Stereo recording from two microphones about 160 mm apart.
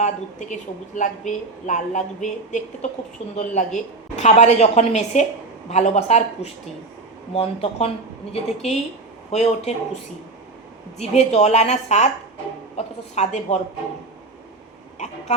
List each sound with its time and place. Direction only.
0.0 s a woman's voice: 50° left (ahead or behind)
10.9 s a woman's voice: 40° left (ahead or behind)
14.9 s speech: 45° left (ahead or behind)